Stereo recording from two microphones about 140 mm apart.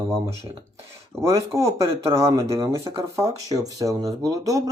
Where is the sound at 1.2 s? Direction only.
20° right (ahead or behind).